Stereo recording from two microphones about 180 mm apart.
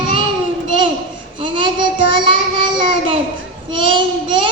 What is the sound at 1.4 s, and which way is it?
Child singing, 30° right (ahead or behind).